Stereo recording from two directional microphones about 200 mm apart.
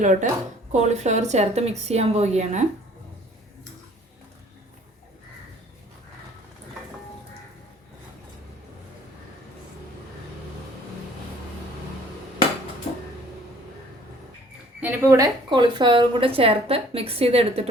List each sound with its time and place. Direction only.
0.0 s a woman's voice: 40° right (ahead or behind)
14.8 s a woman's voice: 10° right (ahead or behind); by 17.7 s 30° right (ahead or behind)